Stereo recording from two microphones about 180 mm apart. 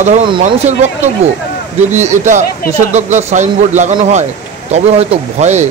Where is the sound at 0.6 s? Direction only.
40° right (ahead or behind).